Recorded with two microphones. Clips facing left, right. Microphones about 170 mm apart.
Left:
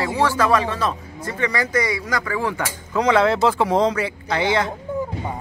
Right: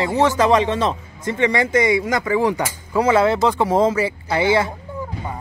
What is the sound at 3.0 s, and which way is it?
Speech, 5° right (ahead or behind).